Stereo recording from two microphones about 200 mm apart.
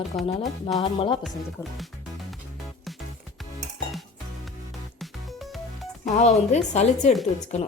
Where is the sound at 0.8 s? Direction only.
25° left (ahead or behind).